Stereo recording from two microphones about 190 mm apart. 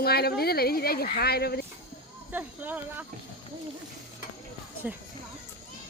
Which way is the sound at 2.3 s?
10° right (ahead or behind).